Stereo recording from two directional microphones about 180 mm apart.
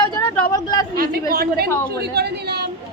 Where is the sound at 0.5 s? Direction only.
20° left (ahead or behind).